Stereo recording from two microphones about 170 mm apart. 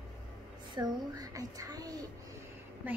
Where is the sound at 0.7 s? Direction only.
20° right (ahead or behind).